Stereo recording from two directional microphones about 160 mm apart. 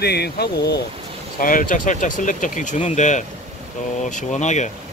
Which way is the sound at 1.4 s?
60° left (ahead or behind).